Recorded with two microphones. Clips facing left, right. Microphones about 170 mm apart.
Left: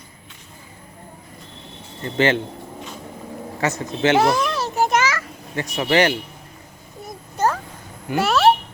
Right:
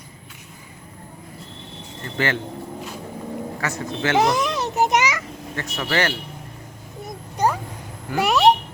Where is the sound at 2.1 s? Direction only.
20° left (ahead or behind).